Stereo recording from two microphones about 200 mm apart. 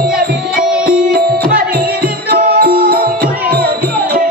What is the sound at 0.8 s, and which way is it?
Music, 50° right (ahead or behind).